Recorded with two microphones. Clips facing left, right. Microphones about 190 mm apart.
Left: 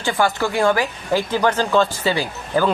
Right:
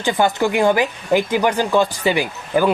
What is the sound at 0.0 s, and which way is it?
Speech, 20° right (ahead or behind).